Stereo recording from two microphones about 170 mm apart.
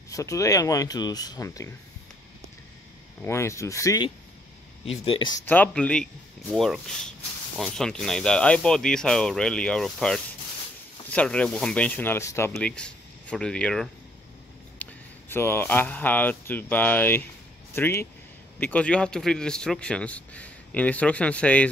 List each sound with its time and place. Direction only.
0.1 s speech: 20° left (ahead or behind)
3.3 s a man's voice: 15° left (ahead or behind)
4.8 s speech: 30° left (ahead or behind)
5.4 s a man's voice: 10° left (ahead or behind)
12.5 s a man's voice: 5° left (ahead or behind)